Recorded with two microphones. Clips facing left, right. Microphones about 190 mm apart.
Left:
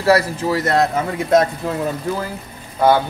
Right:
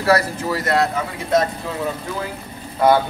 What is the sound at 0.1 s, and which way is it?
Speech, 40° left (ahead or behind).